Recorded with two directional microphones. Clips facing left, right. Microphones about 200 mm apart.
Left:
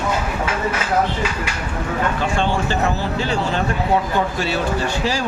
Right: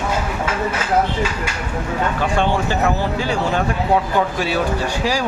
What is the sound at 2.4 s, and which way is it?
Speech, 15° right (ahead or behind).